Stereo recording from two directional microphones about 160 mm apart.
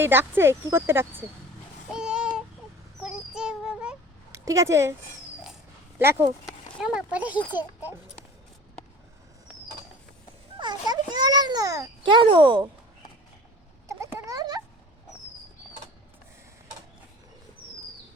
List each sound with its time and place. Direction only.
0.0 s speech: 15° right (ahead or behind)
1.9 s a sound: 5° right (ahead or behind)
4.3 s a woman's voice: 20° right (ahead or behind)
6.0 s speech: 15° right (ahead or behind)
6.4 s speech: 5° right (ahead or behind)
10.6 s a child's voice: 25° right (ahead or behind)
13.8 s a sound: 20° right (ahead or behind)